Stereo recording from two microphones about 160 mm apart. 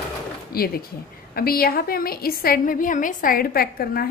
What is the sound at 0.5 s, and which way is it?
A woman's voice, 70° left (ahead or behind).